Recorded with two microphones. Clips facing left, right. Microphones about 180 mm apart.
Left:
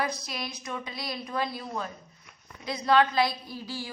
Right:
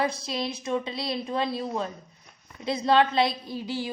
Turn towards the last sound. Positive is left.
turn(degrees=-20)  # may be behind; listen again after turning